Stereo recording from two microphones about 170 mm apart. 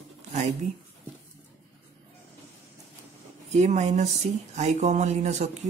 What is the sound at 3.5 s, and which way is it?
Speech, 40° right (ahead or behind).